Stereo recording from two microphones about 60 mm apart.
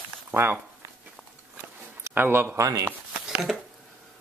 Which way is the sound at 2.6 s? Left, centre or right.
Right.